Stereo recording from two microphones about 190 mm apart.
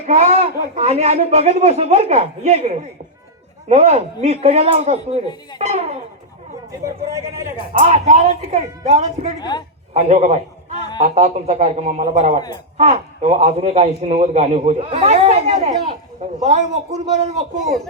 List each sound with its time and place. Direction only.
0.0 s a man's voice: 35° right (ahead or behind)
6.8 s a man's voice: 15° right (ahead or behind)
7.7 s a man's voice: 35° right (ahead or behind)
9.4 s a man's voice: 20° left (ahead or behind)
9.9 s a man's voice: 35° right (ahead or behind)
17.6 s speech: centre (ahead or behind)